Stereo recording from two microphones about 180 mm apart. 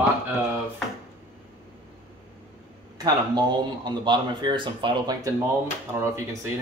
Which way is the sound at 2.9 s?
20° right (ahead or behind).